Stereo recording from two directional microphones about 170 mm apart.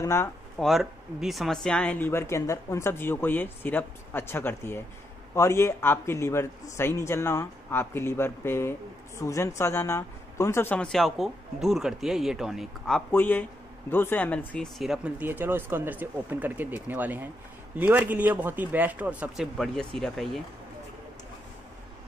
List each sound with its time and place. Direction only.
0.0 s speech: 15° left (ahead or behind)
0.6 s a man's voice: centre (ahead or behind)